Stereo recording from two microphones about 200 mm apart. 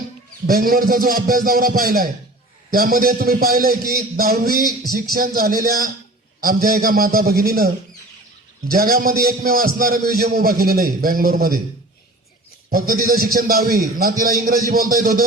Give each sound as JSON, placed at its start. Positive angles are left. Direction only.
{"t": 0.4, "sound": "a man's voice", "side_deg": -45}
{"t": 12.7, "sound": "a man's voice", "side_deg": -45}